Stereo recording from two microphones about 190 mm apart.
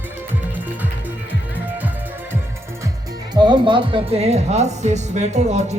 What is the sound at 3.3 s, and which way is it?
Speech, 25° right (ahead or behind).